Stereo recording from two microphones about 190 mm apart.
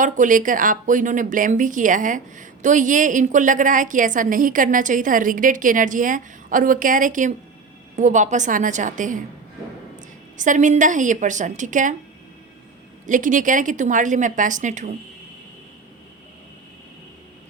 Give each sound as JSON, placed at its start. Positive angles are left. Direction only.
{"t": 0.0, "sound": "a woman's voice", "side_deg": -45}
{"t": 10.3, "sound": "a woman's voice", "side_deg": -40}
{"t": 13.1, "sound": "a woman's voice", "side_deg": -45}